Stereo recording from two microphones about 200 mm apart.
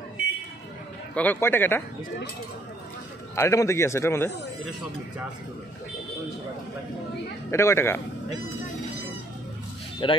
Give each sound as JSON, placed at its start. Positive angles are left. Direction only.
{"t": 1.1, "sound": "a man's voice", "side_deg": 10}
{"t": 3.3, "sound": "a man's voice", "side_deg": 15}
{"t": 7.5, "sound": "a man's voice", "side_deg": 15}
{"t": 10.0, "sound": "speech", "side_deg": 25}